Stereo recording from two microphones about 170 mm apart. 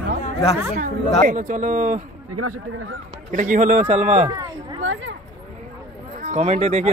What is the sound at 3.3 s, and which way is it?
A man's voice, 50° right (ahead or behind).